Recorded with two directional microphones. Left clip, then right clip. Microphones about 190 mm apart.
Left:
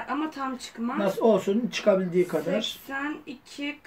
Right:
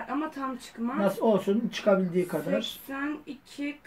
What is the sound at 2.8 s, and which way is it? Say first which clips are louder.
Speech: left 2 dB; 10° left (ahead or behind).